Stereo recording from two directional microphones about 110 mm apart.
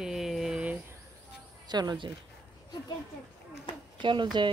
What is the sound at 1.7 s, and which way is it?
Speech, 40° right (ahead or behind).